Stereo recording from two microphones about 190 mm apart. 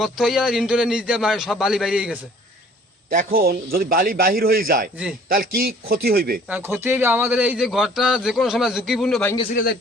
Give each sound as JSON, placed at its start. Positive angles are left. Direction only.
{"t": 0.0, "sound": "a man's voice", "side_deg": 0}
{"t": 3.1, "sound": "a man's voice", "side_deg": -50}
{"t": 6.5, "sound": "a man's voice", "side_deg": -10}